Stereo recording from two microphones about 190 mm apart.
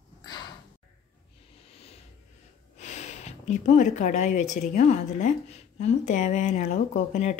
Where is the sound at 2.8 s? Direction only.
40° left (ahead or behind).